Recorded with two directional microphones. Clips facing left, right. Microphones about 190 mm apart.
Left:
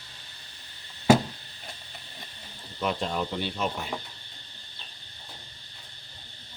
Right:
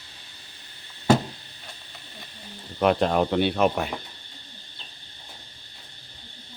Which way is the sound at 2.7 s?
65° right (ahead or behind).